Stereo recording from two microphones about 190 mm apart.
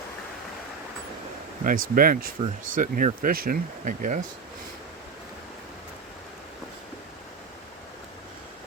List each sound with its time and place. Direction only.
1.6 s speech: 50° right (ahead or behind)